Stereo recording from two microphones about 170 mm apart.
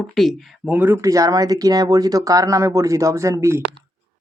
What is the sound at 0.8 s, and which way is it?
Speech, 15° right (ahead or behind).